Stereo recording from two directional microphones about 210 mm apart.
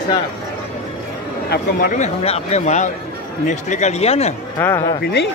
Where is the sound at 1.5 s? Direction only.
40° left (ahead or behind).